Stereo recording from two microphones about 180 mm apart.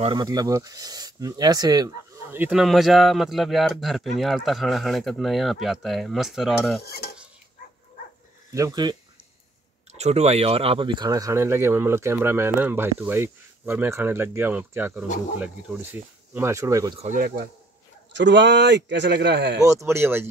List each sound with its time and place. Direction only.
0.0 s speech: 25° right (ahead or behind)
2.3 s speech: 10° right (ahead or behind)
2.6 s speech: centre (ahead or behind)
6.8 s stir: 60° left (ahead or behind)
8.5 s speech: 20° right (ahead or behind)
9.9 s speech: 35° right (ahead or behind); by 17.0 s 15° right (ahead or behind)
17.0 s speech: 50° right (ahead or behind)
18.1 s speech: 80° right
19.6 s speech: 15° right (ahead or behind)